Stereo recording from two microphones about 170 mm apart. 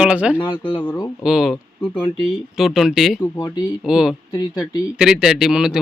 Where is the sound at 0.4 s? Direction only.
30° left (ahead or behind).